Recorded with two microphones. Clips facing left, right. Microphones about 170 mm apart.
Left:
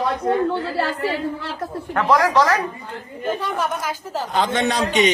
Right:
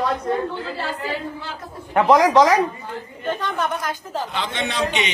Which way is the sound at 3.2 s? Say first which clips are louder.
Left 1 dB; 10° left (ahead or behind).